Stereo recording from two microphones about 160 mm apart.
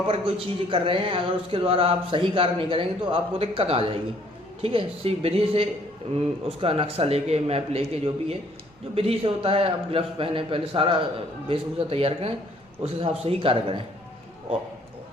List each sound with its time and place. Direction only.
0.1 s speech: 35° right (ahead or behind)